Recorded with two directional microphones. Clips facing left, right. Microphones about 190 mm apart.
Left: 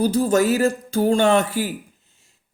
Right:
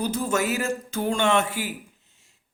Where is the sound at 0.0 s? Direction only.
35° left (ahead or behind).